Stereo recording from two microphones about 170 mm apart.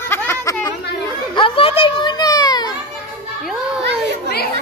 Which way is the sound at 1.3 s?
30° left (ahead or behind).